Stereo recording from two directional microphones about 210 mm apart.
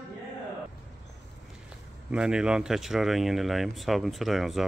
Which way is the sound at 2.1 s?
5° right (ahead or behind).